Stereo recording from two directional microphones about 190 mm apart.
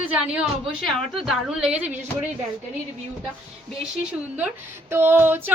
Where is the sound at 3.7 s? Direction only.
5° right (ahead or behind).